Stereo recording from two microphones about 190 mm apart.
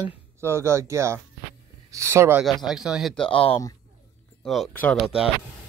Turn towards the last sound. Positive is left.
turn(degrees=0)  # may be behind; listen again after turning